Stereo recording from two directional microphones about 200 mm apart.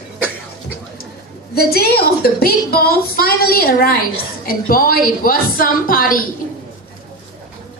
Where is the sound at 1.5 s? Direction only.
50° left (ahead or behind).